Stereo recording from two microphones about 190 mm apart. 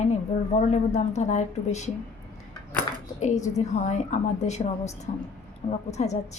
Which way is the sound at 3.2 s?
40° left (ahead or behind).